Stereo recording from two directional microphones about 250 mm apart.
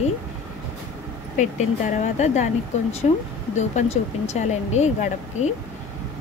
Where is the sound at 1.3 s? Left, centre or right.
Left.